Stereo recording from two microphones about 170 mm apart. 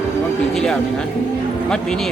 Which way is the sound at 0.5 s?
5° left (ahead or behind).